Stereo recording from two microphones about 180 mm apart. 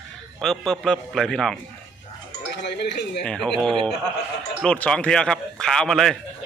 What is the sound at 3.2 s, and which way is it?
Speech, 5° left (ahead or behind).